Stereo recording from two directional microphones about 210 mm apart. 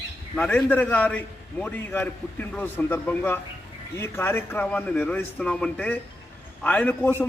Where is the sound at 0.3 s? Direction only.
5° left (ahead or behind).